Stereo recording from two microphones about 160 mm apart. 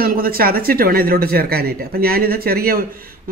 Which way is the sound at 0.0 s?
65° right (ahead or behind).